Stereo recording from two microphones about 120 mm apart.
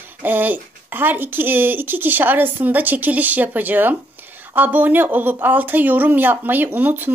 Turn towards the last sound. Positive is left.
turn(degrees=-15)  # may be behind; listen again after turning